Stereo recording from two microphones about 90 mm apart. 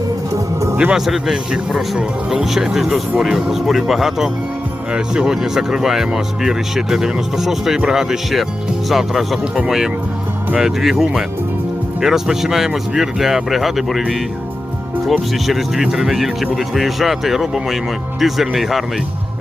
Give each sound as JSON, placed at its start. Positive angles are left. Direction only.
{"t": 0.3, "sound": "music", "side_deg": -35}
{"t": 0.8, "sound": "speech", "side_deg": -10}
{"t": 15.4, "sound": "speech", "side_deg": -5}